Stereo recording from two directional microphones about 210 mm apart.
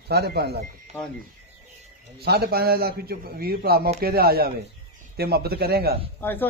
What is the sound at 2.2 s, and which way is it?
A man's voice, 50° right (ahead or behind).